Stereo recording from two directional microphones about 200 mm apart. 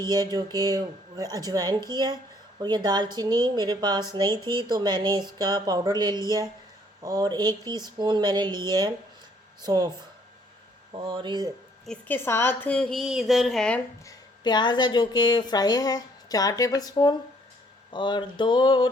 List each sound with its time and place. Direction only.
0.0 s speech: 20° right (ahead or behind)
10.9 s speech: 25° right (ahead or behind)
11.9 s a woman's voice: 10° left (ahead or behind)
14.0 s a woman's voice: 20° left (ahead or behind)